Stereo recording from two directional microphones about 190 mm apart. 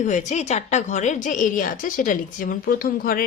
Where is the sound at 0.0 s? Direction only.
40° left (ahead or behind).